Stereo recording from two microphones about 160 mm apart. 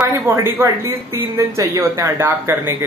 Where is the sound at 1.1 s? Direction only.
20° right (ahead or behind).